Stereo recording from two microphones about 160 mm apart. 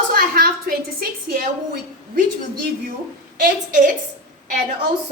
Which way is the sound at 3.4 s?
55° right (ahead or behind).